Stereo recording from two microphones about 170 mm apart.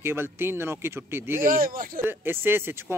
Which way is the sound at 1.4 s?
60° right (ahead or behind).